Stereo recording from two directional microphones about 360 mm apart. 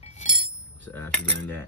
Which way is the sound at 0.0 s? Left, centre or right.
Centre.